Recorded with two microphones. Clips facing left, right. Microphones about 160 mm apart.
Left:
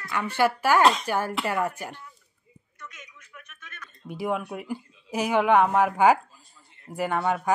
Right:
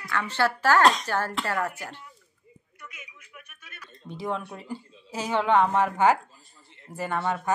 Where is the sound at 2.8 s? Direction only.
10° right (ahead or behind).